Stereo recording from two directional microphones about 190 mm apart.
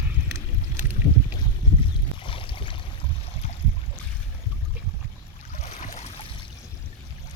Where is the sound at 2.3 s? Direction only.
25° left (ahead or behind).